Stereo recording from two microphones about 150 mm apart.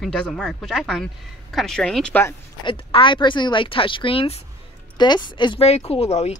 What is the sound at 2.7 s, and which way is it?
Speech, 35° left (ahead or behind).